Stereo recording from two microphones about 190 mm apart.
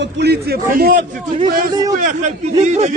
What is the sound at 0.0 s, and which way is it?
Speech, 60° right (ahead or behind).